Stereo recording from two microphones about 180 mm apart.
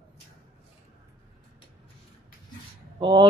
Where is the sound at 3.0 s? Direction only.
25° right (ahead or behind).